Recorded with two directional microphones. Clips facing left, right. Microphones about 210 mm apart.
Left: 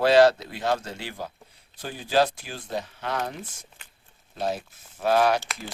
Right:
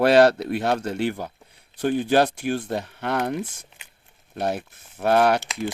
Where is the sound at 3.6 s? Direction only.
20° right (ahead or behind).